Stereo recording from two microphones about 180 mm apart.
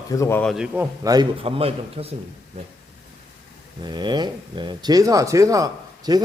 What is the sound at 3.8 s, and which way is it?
Speech, 25° right (ahead or behind).